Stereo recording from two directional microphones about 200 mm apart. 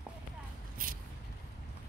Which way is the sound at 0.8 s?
45° right (ahead or behind).